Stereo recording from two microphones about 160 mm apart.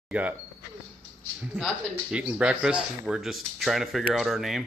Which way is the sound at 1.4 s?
5° right (ahead or behind).